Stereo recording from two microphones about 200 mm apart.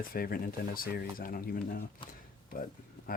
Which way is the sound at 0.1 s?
45° left (ahead or behind).